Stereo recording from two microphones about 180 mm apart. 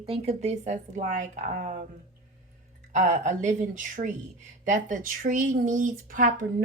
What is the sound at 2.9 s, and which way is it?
Speech, 45° right (ahead or behind).